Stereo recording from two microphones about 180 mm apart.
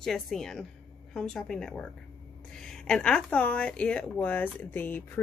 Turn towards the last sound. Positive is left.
turn(degrees=10)  # may be behind; listen again after turning